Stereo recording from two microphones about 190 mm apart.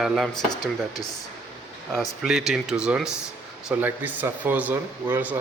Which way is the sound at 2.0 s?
Centre (ahead or behind).